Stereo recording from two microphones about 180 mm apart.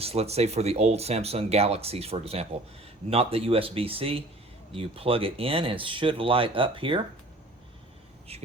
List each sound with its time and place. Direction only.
0.0 s speech: 35° right (ahead or behind)
8.3 s speech: 35° right (ahead or behind)